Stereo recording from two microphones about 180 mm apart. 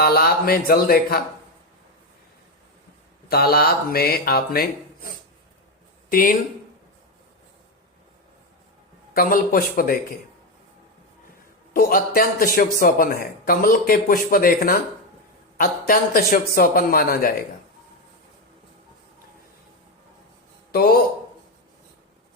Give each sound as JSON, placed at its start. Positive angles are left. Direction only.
{"t": 0.0, "sound": "speech", "side_deg": 55}
{"t": 3.2, "sound": "speech", "side_deg": 60}
{"t": 9.1, "sound": "speech", "side_deg": 55}
{"t": 11.7, "sound": "speech", "side_deg": 55}
{"t": 15.9, "sound": "speech", "side_deg": 55}
{"t": 20.7, "sound": "speech", "side_deg": 55}